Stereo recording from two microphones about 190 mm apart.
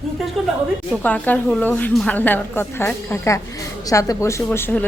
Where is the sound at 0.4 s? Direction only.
Centre (ahead or behind).